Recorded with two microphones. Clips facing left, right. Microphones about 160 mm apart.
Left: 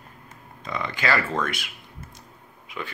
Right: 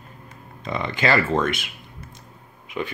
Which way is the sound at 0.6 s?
25° right (ahead or behind).